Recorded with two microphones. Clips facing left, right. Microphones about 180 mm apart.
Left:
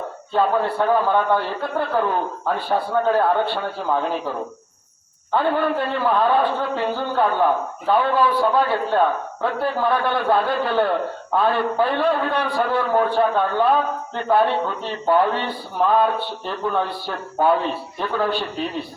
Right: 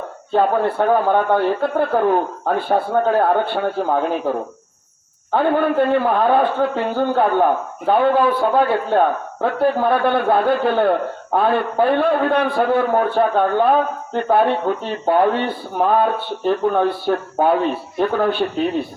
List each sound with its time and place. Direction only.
0.3 s a man's voice: 50° right (ahead or behind)